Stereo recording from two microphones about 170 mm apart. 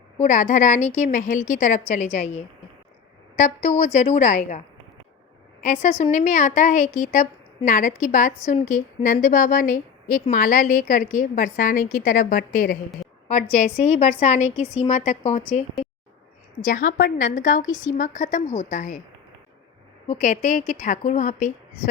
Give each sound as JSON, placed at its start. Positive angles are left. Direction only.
{"t": 0.2, "sound": "a woman's voice", "side_deg": 45}
{"t": 5.6, "sound": "a woman's voice", "side_deg": 45}
{"t": 16.6, "sound": "a woman's voice", "side_deg": 50}
{"t": 20.1, "sound": "a woman's voice", "side_deg": 45}